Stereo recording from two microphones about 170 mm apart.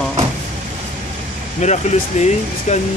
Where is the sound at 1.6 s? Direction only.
45° left (ahead or behind).